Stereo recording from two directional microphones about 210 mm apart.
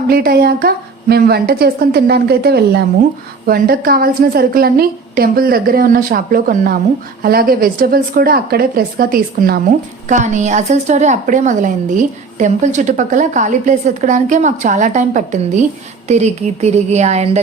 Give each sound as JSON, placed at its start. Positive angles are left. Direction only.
{"t": 0.1, "sound": "a woman's voice", "side_deg": -45}